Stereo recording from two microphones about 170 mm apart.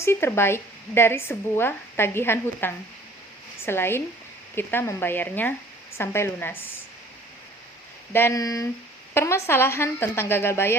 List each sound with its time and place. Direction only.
0.0 s speech: 15° left (ahead or behind)
8.1 s speech: 15° left (ahead or behind)